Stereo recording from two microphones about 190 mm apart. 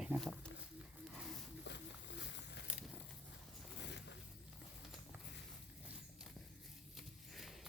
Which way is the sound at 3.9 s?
65° left (ahead or behind).